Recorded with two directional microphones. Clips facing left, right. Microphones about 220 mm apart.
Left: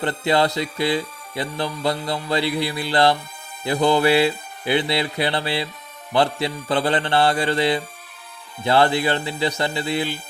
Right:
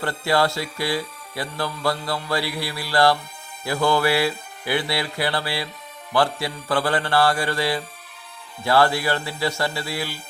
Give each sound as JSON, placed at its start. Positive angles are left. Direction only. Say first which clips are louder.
{"t": 0.0, "sound": "music", "louder": "left 2 dB", "side_deg": 20}